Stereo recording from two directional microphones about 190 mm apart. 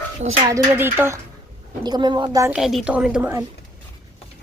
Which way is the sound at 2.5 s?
5° right (ahead or behind).